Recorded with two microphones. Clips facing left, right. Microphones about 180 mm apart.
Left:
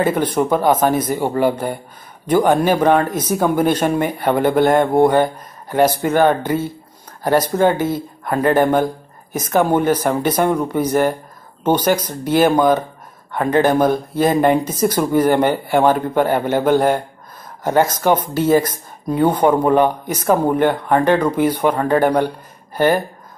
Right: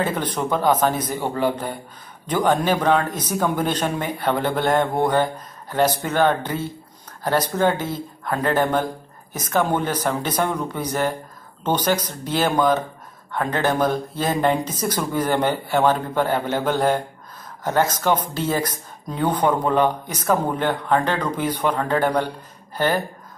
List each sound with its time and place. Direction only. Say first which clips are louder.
0.0 s speech: left 7 dB; 10° left (ahead or behind)